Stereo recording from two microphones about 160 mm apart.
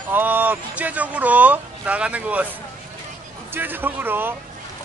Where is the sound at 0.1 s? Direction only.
10° right (ahead or behind).